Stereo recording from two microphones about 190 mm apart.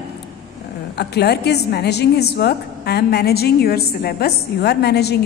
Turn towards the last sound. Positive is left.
turn(degrees=60)  # may be behind; listen again after turning